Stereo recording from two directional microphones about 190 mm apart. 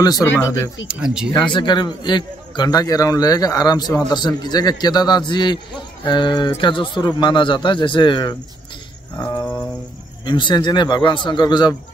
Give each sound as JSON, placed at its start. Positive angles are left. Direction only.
{"t": 0.0, "sound": "speech", "side_deg": 20}
{"t": 0.8, "sound": "speech", "side_deg": -5}
{"t": 1.3, "sound": "a man's voice", "side_deg": 25}
{"t": 10.2, "sound": "a man's voice", "side_deg": 25}